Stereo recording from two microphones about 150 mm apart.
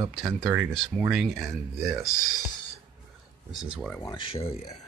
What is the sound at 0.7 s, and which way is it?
Speech, centre (ahead or behind).